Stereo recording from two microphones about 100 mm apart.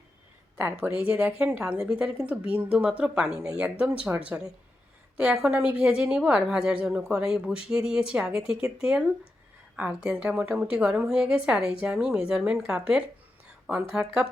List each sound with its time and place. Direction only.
0.6 s a woman's voice: 25° right (ahead or behind)
1.5 s a woman's voice: 10° right (ahead or behind)